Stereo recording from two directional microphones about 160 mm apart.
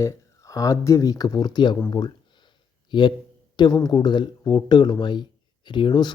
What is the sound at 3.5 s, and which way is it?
Speech, 25° left (ahead or behind).